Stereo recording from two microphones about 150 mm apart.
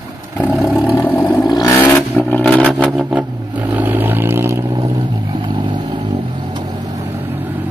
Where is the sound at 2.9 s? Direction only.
5° right (ahead or behind); by 6.7 s 30° right (ahead or behind).